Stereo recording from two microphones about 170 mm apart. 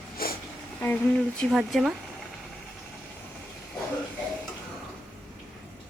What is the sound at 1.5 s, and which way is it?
Speech, centre (ahead or behind).